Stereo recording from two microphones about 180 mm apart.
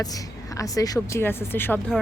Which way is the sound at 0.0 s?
20° left (ahead or behind).